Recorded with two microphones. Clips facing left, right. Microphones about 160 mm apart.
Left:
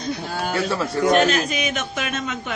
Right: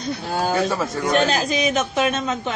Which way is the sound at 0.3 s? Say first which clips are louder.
Right 4 dB; 25° right (ahead or behind).